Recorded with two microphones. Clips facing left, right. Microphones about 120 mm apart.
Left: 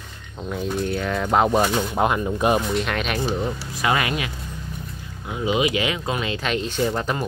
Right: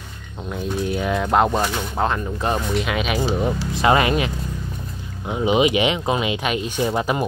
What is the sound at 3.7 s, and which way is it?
Speech, 30° right (ahead or behind).